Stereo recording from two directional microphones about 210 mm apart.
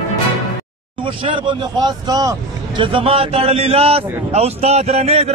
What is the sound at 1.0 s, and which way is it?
Speech, 25° right (ahead or behind).